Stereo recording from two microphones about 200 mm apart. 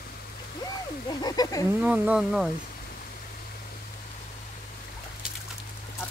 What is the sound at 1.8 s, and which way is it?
Speech, 5° right (ahead or behind).